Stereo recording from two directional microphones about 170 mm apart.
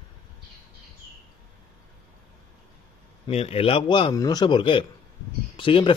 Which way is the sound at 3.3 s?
35° left (ahead or behind).